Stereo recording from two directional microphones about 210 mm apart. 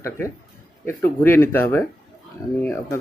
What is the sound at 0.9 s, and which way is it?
Speech, 10° left (ahead or behind).